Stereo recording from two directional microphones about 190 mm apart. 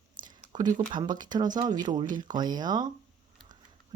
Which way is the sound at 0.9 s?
20° right (ahead or behind).